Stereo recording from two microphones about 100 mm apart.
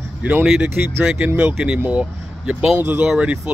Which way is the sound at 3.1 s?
10° right (ahead or behind).